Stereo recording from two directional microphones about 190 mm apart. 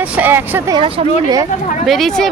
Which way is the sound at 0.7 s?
30° right (ahead or behind).